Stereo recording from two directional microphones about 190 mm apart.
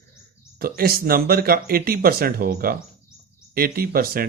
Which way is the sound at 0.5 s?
50° right (ahead or behind).